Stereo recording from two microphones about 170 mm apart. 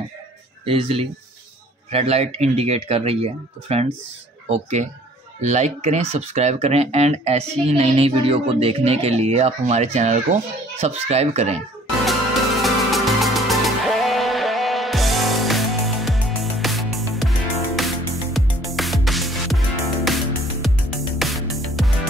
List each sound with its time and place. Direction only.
0.7 s speech: 35° right (ahead or behind)
12.0 s music: centre (ahead or behind)
20.6 s music: centre (ahead or behind)